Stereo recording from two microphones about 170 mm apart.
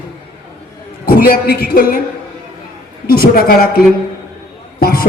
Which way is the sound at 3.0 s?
60° left (ahead or behind).